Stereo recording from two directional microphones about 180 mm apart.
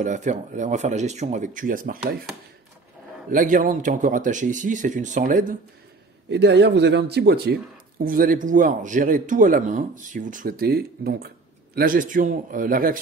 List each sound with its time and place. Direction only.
0.0 s speech: 45° right (ahead or behind)
3.3 s speech: 50° right (ahead or behind)
6.3 s speech: 75° right (ahead or behind)
8.0 s speech: 50° right (ahead or behind)